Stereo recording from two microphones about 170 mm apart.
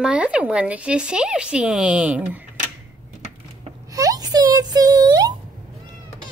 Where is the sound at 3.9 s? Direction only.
20° right (ahead or behind).